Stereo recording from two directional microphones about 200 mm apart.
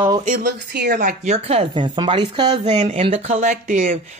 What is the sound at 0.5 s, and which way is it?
Speech, 55° right (ahead or behind).